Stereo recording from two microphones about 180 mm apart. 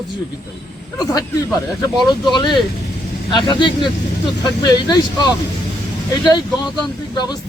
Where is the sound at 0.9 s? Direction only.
20° left (ahead or behind).